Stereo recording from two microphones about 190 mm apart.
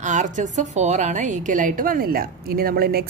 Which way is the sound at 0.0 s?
40° right (ahead or behind).